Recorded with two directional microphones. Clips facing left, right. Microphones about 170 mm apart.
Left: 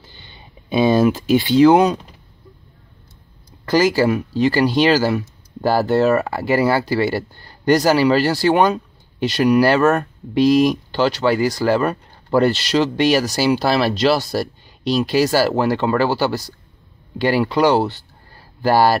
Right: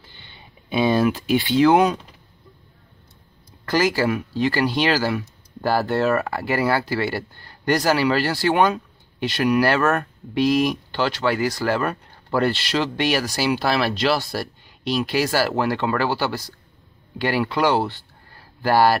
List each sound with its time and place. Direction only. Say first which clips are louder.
0.2 s a sound: left 3 dB; 40° left (ahead or behind)
1.2 s speech: left 6 dB; 35° left (ahead or behind)
4.0 s speech: left 5 dB; 35° left (ahead or behind)
6.0 s speech: left 4 dB; 20° left (ahead or behind)
6.7 s speech: left 4 dB; 35° left (ahead or behind)
9.8 s speech: left 5 dB; 20° left (ahead or behind)
10.3 s speech: left 5 dB; 35° left (ahead or behind)